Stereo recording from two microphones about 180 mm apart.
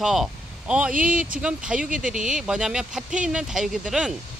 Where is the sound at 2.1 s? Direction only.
5° right (ahead or behind).